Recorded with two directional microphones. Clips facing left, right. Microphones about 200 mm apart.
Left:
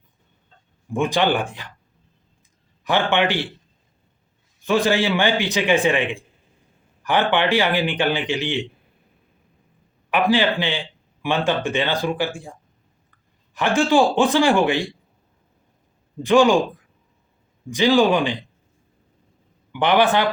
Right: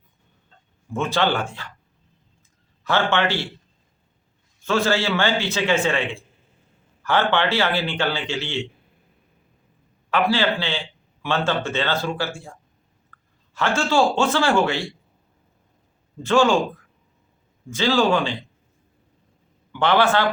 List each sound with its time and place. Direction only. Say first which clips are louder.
0.9 s a man's voice: left 2 dB; 15° left (ahead or behind)
2.8 s a man's voice: left 1 dB; 15° left (ahead or behind)
4.6 s a man's voice: left 2 dB; 15° left (ahead or behind)
10.1 s a man's voice: left 2 dB; 15° left (ahead or behind)
13.1 s a sound: right 6 dB; 15° left (ahead or behind)
13.5 s a man's voice: left 4 dB; 15° left (ahead or behind)
16.2 s a man's voice: left 3 dB; 15° left (ahead or behind)
17.7 s a man's voice: left 3 dB; 15° left (ahead or behind)
19.7 s a man's voice: left 1 dB; 15° left (ahead or behind)